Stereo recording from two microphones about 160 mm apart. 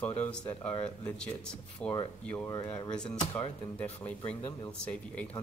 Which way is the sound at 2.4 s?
25° left (ahead or behind).